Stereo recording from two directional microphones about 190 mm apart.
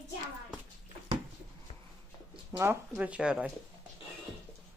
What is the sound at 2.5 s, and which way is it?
Speech, 10° right (ahead or behind).